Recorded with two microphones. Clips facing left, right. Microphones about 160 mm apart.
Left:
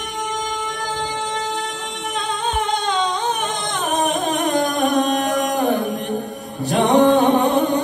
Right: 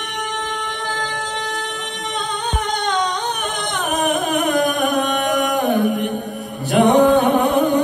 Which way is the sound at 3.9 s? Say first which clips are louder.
Right 1 dB; 35° left (ahead or behind).